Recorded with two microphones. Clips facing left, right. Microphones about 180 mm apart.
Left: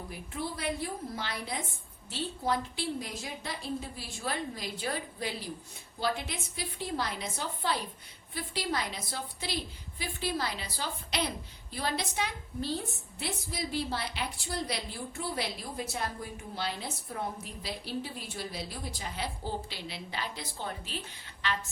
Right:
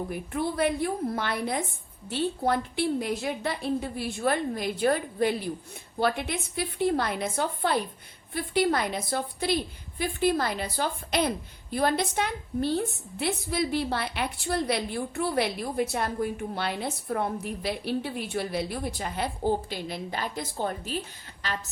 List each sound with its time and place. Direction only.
0.1 s a woman's voice: 55° right (ahead or behind); by 21.6 s 40° right (ahead or behind)